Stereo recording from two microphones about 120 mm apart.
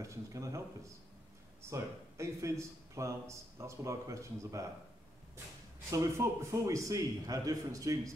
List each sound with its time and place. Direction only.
0.0 s a man's voice: 25° right (ahead or behind)
1.6 s a man's voice: 25° right (ahead or behind)
5.9 s a man's voice: 25° right (ahead or behind)